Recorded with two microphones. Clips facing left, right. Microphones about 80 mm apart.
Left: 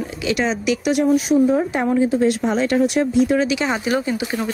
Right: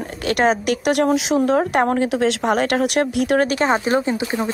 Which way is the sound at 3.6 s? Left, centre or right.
Right.